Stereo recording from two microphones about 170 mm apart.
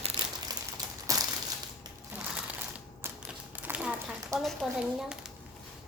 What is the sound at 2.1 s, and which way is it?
Crumpling, 10° right (ahead or behind).